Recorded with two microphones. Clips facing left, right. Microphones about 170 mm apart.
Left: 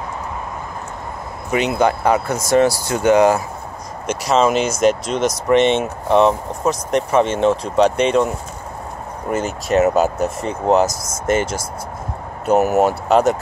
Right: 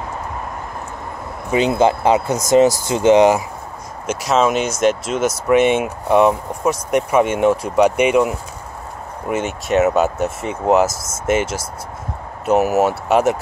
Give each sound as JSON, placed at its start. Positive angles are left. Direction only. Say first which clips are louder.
{"t": 1.5, "sound": "speech", "louder": "right 2 dB", "side_deg": -30}
{"t": 4.1, "sound": "speech", "louder": "left 1 dB", "side_deg": 0}